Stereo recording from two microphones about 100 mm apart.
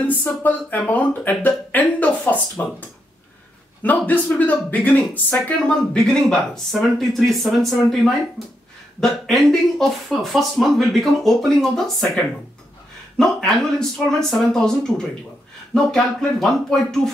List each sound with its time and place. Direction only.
0.0 s speech: 20° left (ahead or behind)
1.7 s a sound: 15° left (ahead or behind)
3.8 s speech: 15° left (ahead or behind)
5.9 s speech: 5° left (ahead or behind)
13.2 s speech: 5° left (ahead or behind)